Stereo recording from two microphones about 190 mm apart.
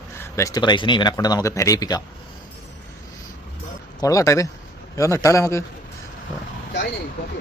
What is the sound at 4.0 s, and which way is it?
Speech, 15° left (ahead or behind).